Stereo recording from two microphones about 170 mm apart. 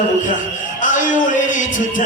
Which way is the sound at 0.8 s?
50° left (ahead or behind).